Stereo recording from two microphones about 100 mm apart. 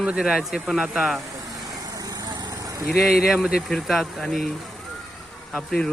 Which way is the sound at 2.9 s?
Centre (ahead or behind).